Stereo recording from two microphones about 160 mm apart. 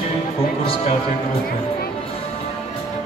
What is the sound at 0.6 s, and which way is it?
Speech, 35° left (ahead or behind).